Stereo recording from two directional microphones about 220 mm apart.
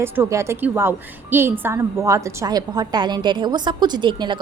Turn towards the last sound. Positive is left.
turn(degrees=-20)  # may be behind; listen again after turning